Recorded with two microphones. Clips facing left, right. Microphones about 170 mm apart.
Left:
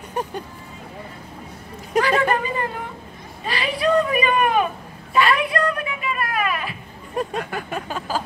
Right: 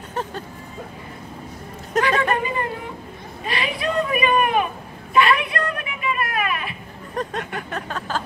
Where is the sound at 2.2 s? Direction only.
30° left (ahead or behind).